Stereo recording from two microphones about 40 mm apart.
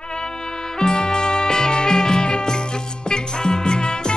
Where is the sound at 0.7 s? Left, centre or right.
Centre.